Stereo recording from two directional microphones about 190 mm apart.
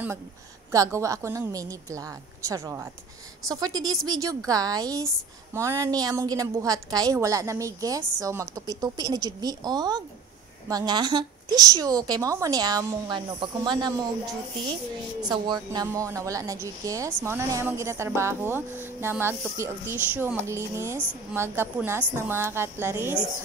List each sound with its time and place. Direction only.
0.7 s a woman's voice: 15° right (ahead or behind)
15.2 s a woman's voice: 20° right (ahead or behind)